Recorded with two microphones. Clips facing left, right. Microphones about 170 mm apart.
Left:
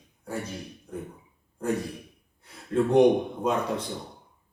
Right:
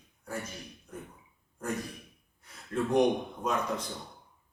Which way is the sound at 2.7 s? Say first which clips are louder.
Left 6 dB; 30° left (ahead or behind).